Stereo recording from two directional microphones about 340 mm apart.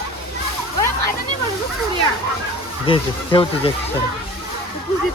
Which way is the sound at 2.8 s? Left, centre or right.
Centre.